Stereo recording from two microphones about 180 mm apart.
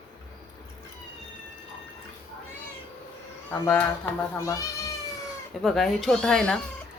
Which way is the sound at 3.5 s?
10° left (ahead or behind).